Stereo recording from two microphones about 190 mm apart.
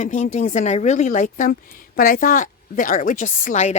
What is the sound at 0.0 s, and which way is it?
A woman's voice, 40° left (ahead or behind).